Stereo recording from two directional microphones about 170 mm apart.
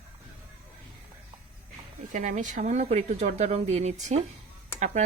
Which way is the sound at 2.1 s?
45° right (ahead or behind).